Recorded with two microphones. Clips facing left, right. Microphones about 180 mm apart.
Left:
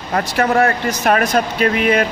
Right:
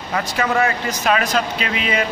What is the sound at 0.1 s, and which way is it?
Speech, 45° left (ahead or behind).